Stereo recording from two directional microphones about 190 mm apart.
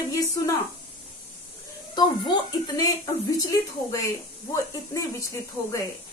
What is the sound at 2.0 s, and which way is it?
Speech, 25° left (ahead or behind).